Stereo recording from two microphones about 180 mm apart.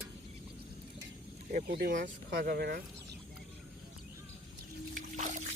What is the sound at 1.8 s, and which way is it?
Speech, 55° right (ahead or behind).